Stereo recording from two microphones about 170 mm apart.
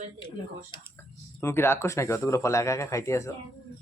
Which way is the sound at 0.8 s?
15° left (ahead or behind).